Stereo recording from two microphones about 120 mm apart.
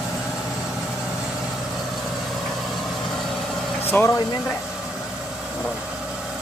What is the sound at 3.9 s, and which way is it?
Speech, 15° left (ahead or behind).